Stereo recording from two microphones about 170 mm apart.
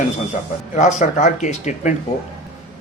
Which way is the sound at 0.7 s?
45° left (ahead or behind).